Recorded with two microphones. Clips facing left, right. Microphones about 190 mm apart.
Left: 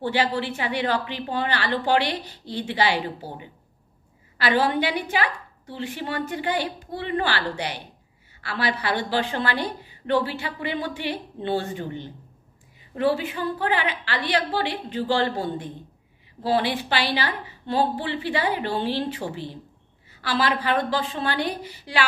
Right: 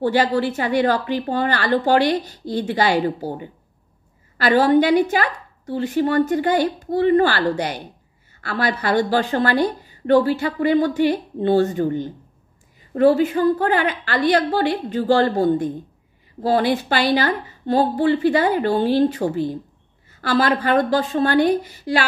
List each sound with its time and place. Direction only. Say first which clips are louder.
0.0 s a woman's voice: right 6 dB; 45° right (ahead or behind)